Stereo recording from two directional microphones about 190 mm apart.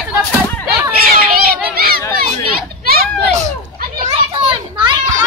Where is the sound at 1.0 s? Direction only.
50° right (ahead or behind).